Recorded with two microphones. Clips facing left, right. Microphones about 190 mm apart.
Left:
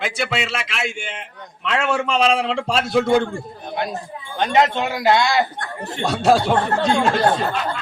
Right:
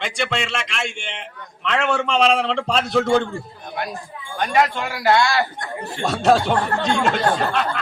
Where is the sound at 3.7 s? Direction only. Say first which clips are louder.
Left 3 dB; 25° left (ahead or behind).